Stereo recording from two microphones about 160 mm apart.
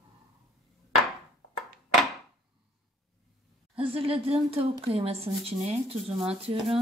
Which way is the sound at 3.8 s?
35° right (ahead or behind).